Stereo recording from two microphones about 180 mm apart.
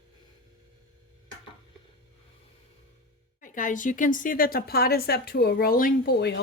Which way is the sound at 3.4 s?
45° left (ahead or behind).